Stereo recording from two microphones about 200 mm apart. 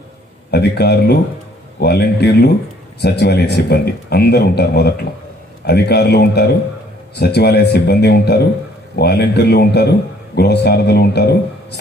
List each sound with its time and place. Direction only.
0.5 s a man's voice: 55° left (ahead or behind)